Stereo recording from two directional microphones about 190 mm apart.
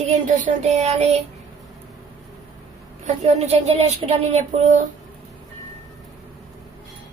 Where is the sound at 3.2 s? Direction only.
35° right (ahead or behind).